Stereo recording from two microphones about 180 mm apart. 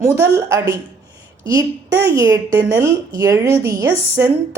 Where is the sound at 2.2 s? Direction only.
20° right (ahead or behind).